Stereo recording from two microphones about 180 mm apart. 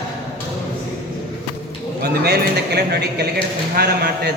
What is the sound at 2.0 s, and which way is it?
A man's voice, 65° right (ahead or behind).